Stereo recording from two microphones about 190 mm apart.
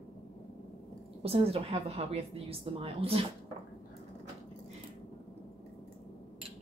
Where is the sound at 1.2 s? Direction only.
30° right (ahead or behind).